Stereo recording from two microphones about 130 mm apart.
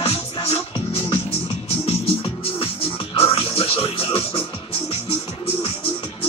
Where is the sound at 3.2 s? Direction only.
45° left (ahead or behind).